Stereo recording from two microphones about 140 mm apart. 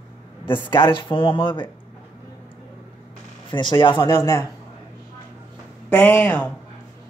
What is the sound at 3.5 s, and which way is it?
Speech, 35° left (ahead or behind).